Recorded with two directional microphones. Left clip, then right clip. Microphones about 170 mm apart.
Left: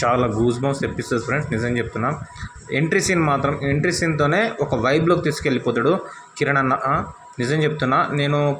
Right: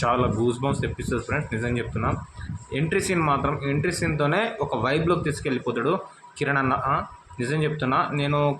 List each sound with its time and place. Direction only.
0.0 s speech: 10° left (ahead or behind)